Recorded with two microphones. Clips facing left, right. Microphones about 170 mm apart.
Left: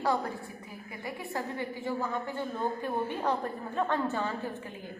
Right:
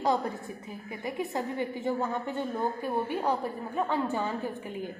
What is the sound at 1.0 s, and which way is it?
A woman's voice, 20° right (ahead or behind).